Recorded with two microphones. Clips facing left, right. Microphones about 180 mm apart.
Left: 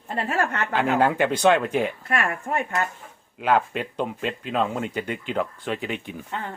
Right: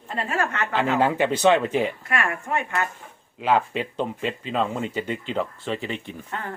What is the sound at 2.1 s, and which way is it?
Speech, 40° left (ahead or behind).